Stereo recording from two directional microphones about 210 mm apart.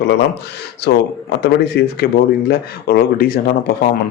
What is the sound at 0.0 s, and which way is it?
Speech, 55° left (ahead or behind).